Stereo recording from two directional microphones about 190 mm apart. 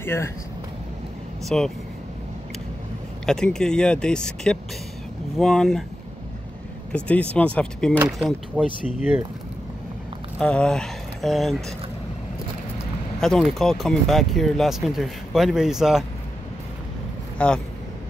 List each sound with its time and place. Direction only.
0.0 s speech: 15° left (ahead or behind)
1.4 s speech: centre (ahead or behind)
3.3 s speech: 5° left (ahead or behind)
6.9 s speech: 5° left (ahead or behind)
10.4 s speech: 5° left (ahead or behind)
13.2 s speech: centre (ahead or behind)
17.4 s speech: 5° left (ahead or behind)